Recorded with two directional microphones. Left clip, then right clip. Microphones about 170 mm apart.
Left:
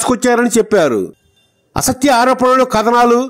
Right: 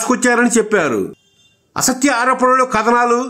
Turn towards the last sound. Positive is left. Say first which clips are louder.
# left 3 dB
turn(degrees=30)  # may be behind; listen again after turning